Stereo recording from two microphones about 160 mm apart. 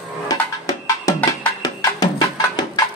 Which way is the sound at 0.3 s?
20° left (ahead or behind).